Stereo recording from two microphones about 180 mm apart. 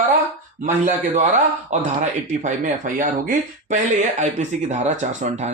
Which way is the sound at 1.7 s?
45° right (ahead or behind).